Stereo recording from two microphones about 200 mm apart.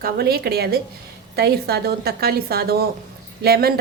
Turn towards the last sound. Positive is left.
turn(degrees=-50)  # may be behind; listen again after turning